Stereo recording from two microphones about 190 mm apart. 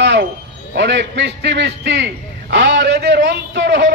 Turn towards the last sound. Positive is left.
turn(degrees=-70)  # may be behind; listen again after turning